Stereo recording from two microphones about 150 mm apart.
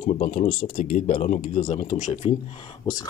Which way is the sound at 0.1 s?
55° left (ahead or behind).